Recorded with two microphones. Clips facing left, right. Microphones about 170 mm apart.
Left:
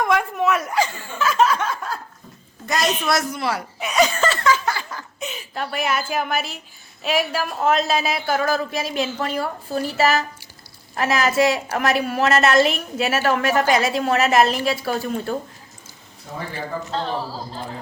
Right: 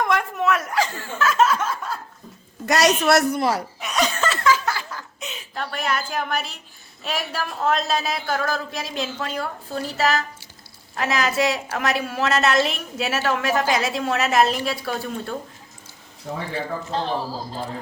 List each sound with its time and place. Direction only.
0.0 s snicker: centre (ahead or behind)
2.6 s a woman's voice: 75° right (ahead or behind)
3.8 s laughter: centre (ahead or behind)
7.0 s a woman's voice: 5° left (ahead or behind)